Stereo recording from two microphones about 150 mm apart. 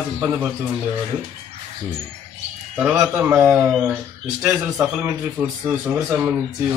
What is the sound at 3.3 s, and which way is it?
Speech, 10° right (ahead or behind).